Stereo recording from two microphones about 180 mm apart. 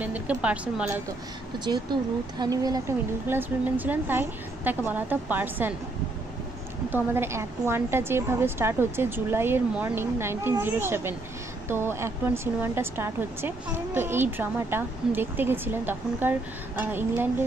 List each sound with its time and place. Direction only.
0.0 s a woman's voice: 5° right (ahead or behind)
1.6 s a woman's voice: 25° right (ahead or behind)
6.9 s a woman's voice: 15° right (ahead or behind)